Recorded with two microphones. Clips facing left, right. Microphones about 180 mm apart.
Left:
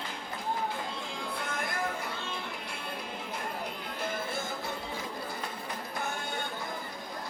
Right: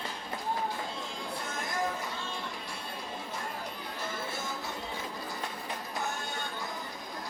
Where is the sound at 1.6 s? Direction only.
60° left (ahead or behind).